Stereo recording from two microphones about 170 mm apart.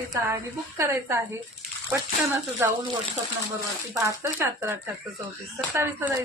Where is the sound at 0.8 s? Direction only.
15° right (ahead or behind).